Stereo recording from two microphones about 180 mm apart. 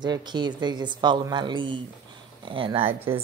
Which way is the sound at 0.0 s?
25° right (ahead or behind).